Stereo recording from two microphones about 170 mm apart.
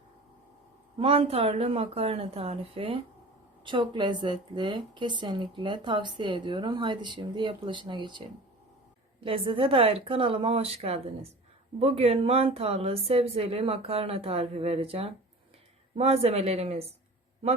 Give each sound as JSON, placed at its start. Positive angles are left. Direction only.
{"t": 0.9, "sound": "a woman's voice", "side_deg": -35}
{"t": 9.2, "sound": "speech", "side_deg": -30}